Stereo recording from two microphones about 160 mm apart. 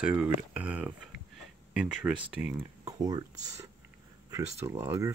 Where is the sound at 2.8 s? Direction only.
25° right (ahead or behind).